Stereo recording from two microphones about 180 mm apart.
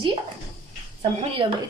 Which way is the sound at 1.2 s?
30° right (ahead or behind).